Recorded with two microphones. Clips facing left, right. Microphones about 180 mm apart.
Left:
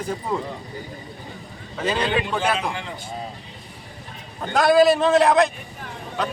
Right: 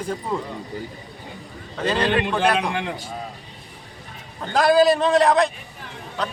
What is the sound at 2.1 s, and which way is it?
Speech, 60° right (ahead or behind).